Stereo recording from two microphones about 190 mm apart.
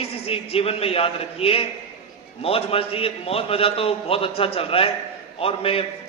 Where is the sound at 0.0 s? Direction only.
30° left (ahead or behind).